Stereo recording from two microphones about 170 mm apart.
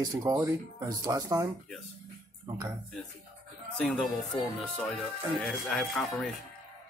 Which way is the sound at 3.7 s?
5° left (ahead or behind).